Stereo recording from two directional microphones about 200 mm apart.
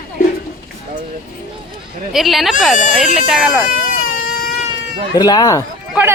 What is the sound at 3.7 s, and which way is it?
Baby cry, 45° left (ahead or behind).